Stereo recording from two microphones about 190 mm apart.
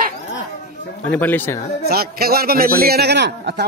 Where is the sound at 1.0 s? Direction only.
10° left (ahead or behind).